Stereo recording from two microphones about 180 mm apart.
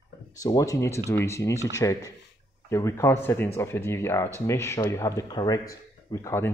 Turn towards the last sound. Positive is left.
turn(degrees=15)  # may be behind; listen again after turning